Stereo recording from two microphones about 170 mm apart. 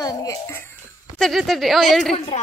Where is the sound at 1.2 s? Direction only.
Centre (ahead or behind).